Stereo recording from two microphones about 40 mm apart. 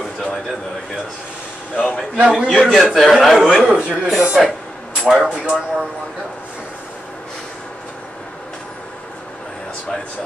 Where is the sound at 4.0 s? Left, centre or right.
Right.